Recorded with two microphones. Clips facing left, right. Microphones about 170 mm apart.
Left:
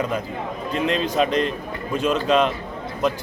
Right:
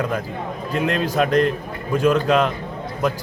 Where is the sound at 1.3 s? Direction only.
60° right (ahead or behind).